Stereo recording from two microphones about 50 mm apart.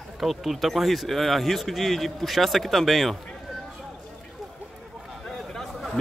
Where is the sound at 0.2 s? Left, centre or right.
Centre.